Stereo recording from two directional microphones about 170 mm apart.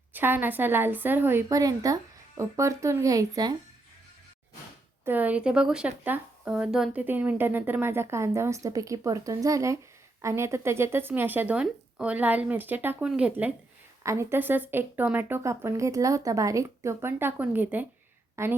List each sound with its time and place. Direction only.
0.1 s speech: 10° right (ahead or behind)
5.0 s speech: 10° right (ahead or behind)